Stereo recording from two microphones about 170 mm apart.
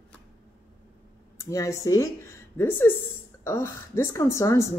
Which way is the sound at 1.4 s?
20° left (ahead or behind).